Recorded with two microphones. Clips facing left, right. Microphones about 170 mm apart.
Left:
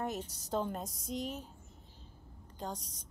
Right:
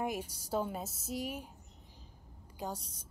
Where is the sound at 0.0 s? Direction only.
10° right (ahead or behind).